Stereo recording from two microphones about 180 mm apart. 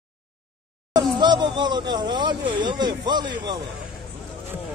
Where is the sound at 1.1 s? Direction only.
25° right (ahead or behind).